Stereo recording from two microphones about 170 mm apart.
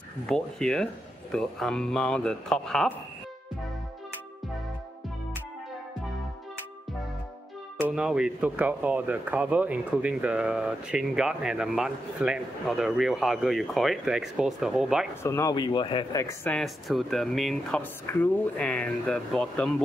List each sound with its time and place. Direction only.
0.3 s speech: 5° left (ahead or behind)
7.7 s speech: 5° right (ahead or behind)
15.2 s speech: 20° left (ahead or behind)
16.4 s speech: centre (ahead or behind)